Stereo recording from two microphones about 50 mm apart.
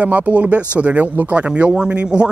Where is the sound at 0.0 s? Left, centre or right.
Right.